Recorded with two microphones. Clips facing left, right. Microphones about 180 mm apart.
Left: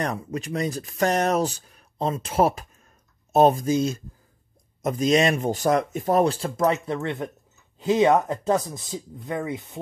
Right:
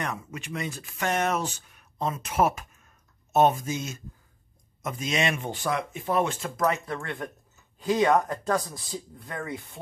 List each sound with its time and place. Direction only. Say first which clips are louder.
0.0 s speech: left 6 dB; 35° left (ahead or behind); by 9.8 s 20° left (ahead or behind)